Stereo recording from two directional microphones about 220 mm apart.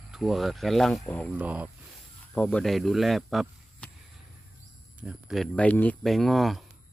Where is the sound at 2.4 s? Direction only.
5° left (ahead or behind).